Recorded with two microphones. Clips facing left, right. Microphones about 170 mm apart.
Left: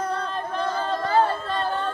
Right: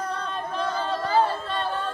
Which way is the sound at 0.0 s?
5° left (ahead or behind).